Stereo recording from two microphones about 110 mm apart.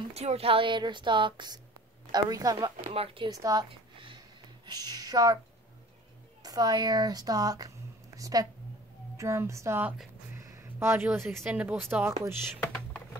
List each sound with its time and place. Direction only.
0.1 s a woman's voice: 70° right (ahead or behind); by 2.7 s 35° right (ahead or behind)
2.9 s speech: 60° right (ahead or behind)
3.3 s a woman's voice: 35° right (ahead or behind)
4.6 s speech: 35° right (ahead or behind)
6.4 s a woman's voice: 35° right (ahead or behind); by 9.9 s 20° right (ahead or behind)
10.3 s a sound: 25° right (ahead or behind)
11.1 s speech: 20° right (ahead or behind)
12.6 s a sound: 10° left (ahead or behind)